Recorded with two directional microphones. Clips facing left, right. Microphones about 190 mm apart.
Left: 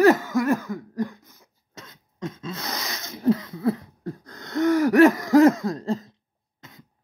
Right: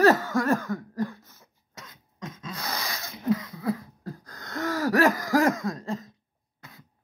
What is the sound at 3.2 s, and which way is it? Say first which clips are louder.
Wheeze: left 5 dB; 25° left (ahead or behind).